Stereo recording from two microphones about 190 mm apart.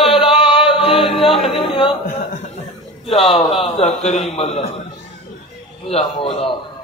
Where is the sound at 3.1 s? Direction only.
30° left (ahead or behind).